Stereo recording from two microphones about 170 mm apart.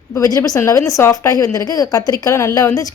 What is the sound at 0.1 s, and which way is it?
Speech, 20° left (ahead or behind).